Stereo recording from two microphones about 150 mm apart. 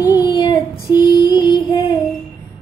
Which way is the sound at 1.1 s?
25° left (ahead or behind).